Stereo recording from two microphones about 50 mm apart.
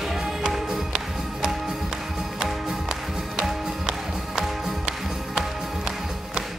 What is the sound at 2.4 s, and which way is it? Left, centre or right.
Music, centre.